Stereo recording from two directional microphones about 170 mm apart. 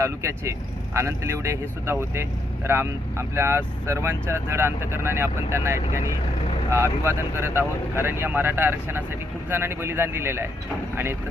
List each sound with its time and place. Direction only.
0.0 s speech: 15° right (ahead or behind)